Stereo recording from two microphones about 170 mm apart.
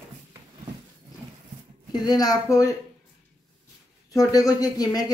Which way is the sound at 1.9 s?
25° left (ahead or behind).